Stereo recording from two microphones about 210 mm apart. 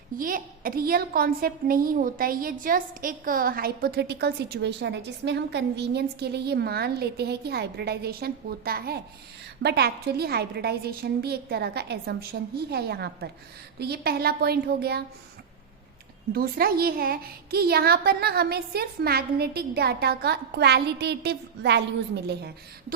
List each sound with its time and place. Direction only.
0.2 s a woman's voice: 40° right (ahead or behind)
16.3 s a woman's voice: 45° right (ahead or behind)